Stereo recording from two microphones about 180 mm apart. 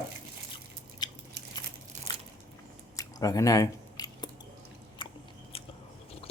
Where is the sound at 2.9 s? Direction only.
20° left (ahead or behind).